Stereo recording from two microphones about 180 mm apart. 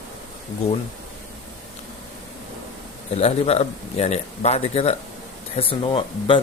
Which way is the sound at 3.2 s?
35° left (ahead or behind).